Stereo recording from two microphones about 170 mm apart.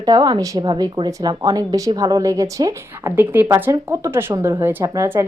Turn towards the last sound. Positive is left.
turn(degrees=-15)  # may be behind; listen again after turning